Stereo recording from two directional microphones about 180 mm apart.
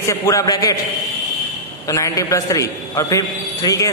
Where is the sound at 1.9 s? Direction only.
15° left (ahead or behind).